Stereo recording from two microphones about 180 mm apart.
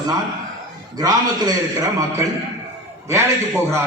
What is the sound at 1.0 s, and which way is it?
A man's voice, 20° right (ahead or behind).